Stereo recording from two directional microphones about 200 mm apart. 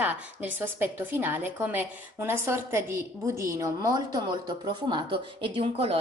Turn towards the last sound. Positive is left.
turn(degrees=-25)  # may be behind; listen again after turning